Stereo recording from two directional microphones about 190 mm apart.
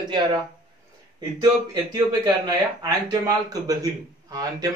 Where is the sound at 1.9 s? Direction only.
20° right (ahead or behind).